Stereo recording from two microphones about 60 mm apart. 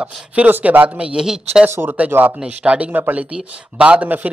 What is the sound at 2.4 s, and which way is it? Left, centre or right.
A man's voice, right.